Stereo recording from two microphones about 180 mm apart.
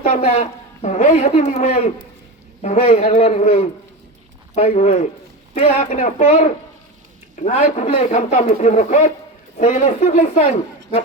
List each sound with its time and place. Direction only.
0.1 s a man's voice: 35° left (ahead or behind)
7.3 s a man's voice: 40° left (ahead or behind)